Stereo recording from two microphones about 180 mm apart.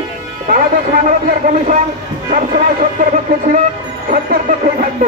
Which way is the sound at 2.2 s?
50° right (ahead or behind).